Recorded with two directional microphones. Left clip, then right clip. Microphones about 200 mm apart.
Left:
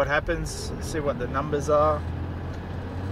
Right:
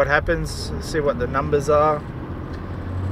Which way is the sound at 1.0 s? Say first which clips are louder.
Right 6 dB; centre (ahead or behind).